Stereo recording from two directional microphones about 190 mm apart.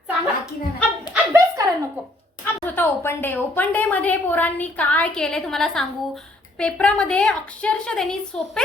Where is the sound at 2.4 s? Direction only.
10° left (ahead or behind).